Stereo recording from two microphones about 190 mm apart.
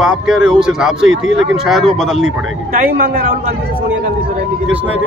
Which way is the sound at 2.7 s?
45° right (ahead or behind).